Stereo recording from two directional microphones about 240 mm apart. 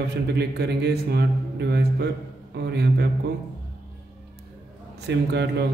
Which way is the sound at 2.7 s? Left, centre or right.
Right.